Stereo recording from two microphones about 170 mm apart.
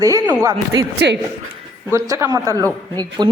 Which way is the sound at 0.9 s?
90° right.